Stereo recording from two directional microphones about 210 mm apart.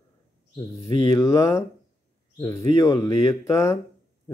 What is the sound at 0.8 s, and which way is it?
Speech, 30° left (ahead or behind).